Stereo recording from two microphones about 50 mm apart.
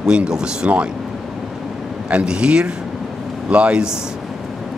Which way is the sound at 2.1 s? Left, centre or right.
Centre.